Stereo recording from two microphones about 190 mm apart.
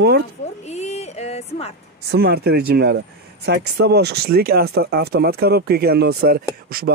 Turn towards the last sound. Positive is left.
turn(degrees=-50)  # may be behind; listen again after turning